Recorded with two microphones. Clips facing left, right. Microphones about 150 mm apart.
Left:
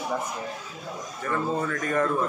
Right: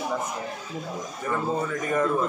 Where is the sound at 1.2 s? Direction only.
15° right (ahead or behind).